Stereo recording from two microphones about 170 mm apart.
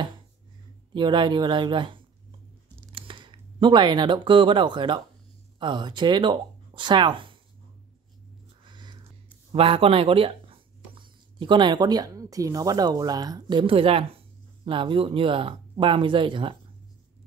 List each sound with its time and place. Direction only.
0.9 s speech: 25° right (ahead or behind)
8.7 s a sound: 25° right (ahead or behind)
9.5 s speech: 30° right (ahead or behind)